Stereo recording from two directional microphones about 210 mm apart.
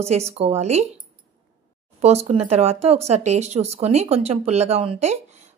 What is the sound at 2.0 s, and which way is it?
Speech, 30° right (ahead or behind).